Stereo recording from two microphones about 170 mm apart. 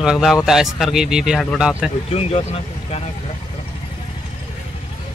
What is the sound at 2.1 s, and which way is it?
Speech, 35° left (ahead or behind).